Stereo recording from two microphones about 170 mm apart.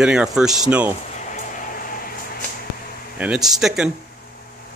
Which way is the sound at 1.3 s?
50° left (ahead or behind).